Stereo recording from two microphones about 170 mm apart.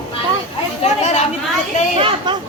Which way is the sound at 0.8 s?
40° left (ahead or behind).